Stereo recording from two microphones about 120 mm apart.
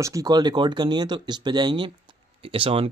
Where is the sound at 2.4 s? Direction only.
50° right (ahead or behind).